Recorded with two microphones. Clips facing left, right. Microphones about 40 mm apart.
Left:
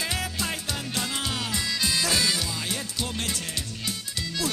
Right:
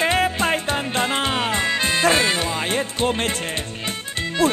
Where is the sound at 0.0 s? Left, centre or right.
Right.